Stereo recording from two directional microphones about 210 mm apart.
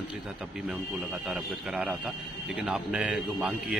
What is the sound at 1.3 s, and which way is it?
A man's voice, 5° right (ahead or behind).